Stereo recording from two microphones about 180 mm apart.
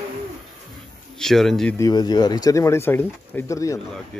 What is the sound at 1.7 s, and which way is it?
Speech, 20° left (ahead or behind).